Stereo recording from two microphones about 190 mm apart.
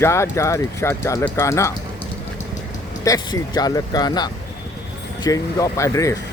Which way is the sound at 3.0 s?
20° left (ahead or behind).